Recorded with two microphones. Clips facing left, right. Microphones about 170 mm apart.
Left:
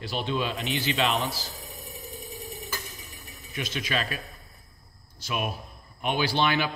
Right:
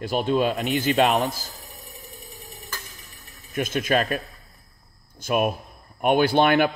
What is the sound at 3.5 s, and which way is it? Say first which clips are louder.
A man's voice: right 8 dB; 50° right (ahead or behind).